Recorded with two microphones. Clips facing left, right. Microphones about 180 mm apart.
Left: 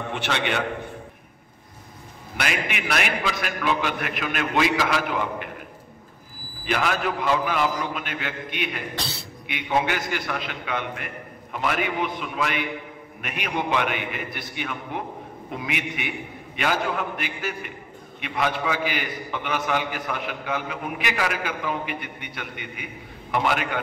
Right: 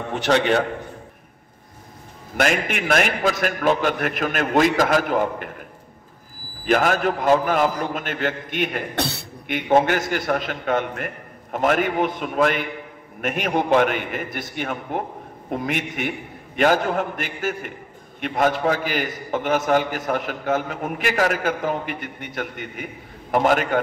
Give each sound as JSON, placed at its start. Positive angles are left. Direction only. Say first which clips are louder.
{"t": 0.1, "sound": "a man's voice", "louder": "right 9 dB", "side_deg": -40}
{"t": 2.3, "sound": "a man's voice", "louder": "right 7 dB", "side_deg": -45}
{"t": 6.6, "sound": "a man's voice", "louder": "right 6 dB", "side_deg": -45}